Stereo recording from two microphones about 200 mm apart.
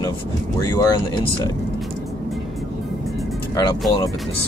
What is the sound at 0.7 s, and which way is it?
Speech, 20° left (ahead or behind).